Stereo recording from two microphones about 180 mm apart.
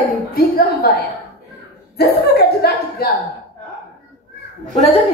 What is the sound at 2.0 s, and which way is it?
Speech, 65° left (ahead or behind).